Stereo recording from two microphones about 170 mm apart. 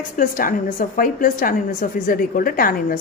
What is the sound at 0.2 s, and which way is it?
A woman's voice, 55° left (ahead or behind).